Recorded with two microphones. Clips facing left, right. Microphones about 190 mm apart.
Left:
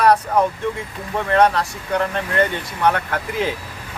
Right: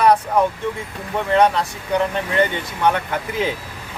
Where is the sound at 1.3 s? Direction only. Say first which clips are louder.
Even; 5° right (ahead or behind).